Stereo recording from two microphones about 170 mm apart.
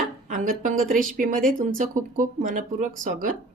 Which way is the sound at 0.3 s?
50° right (ahead or behind).